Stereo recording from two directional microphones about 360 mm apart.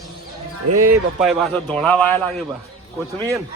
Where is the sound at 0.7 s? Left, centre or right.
Right.